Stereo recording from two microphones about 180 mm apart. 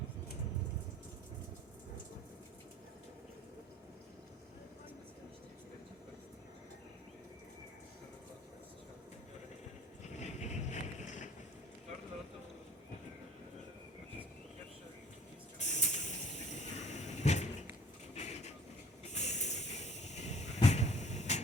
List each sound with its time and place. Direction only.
10.0 s boat: 40° left (ahead or behind)
15.5 s hiss: 40° left (ahead or behind)
18.1 s vehicle: 40° left (ahead or behind)
19.0 s a sound: 40° left (ahead or behind)